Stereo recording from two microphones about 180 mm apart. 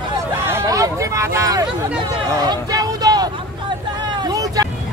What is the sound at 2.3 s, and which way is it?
Vehicle, 20° right (ahead or behind).